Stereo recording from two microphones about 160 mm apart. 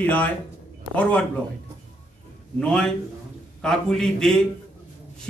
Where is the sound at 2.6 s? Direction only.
5° left (ahead or behind).